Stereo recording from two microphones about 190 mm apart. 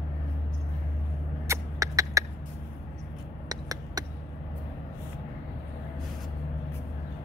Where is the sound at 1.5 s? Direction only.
15° right (ahead or behind).